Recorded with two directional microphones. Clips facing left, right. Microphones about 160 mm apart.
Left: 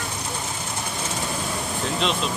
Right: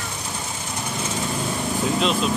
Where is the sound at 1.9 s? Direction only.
5° right (ahead or behind).